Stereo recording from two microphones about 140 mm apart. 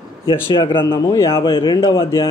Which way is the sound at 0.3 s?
35° left (ahead or behind).